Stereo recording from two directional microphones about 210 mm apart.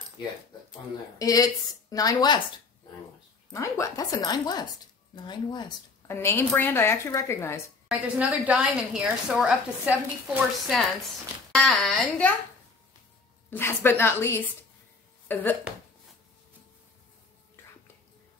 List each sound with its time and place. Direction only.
1.1 s a woman's voice: 15° left (ahead or behind)
3.5 s a woman's voice: 15° left (ahead or behind)
8.2 s a woman's voice: 5° right (ahead or behind)
13.5 s a woman's voice: 10° left (ahead or behind)